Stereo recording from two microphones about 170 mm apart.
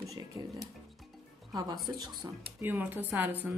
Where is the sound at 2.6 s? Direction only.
10° right (ahead or behind).